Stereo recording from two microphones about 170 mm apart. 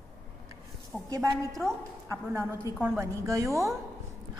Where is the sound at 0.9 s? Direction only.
10° left (ahead or behind).